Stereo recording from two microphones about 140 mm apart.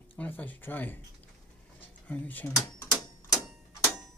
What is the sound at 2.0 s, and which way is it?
Speech, 10° left (ahead or behind).